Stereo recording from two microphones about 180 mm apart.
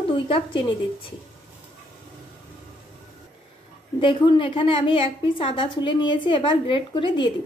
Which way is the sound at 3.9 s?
30° left (ahead or behind).